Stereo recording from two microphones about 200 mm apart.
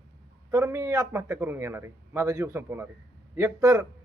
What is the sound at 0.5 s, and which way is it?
A man's voice, 15° right (ahead or behind).